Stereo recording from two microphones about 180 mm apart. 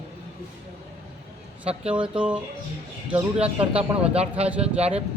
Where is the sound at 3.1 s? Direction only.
30° right (ahead or behind).